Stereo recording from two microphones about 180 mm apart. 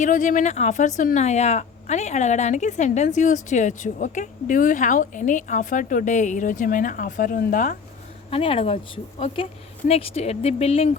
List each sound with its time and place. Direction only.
0.0 s speech: 45° left (ahead or behind)
8.3 s speech: 30° left (ahead or behind)